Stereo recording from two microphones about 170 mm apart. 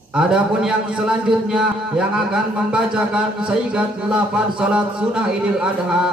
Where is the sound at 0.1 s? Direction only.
5° right (ahead or behind).